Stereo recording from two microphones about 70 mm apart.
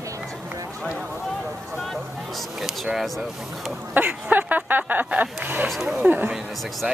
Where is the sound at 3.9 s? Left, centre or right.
Right.